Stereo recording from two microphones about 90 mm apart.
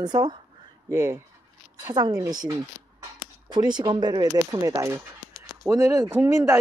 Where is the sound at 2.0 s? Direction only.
45° right (ahead or behind).